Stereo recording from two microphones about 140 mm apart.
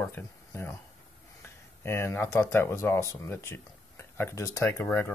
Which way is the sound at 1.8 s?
15° left (ahead or behind).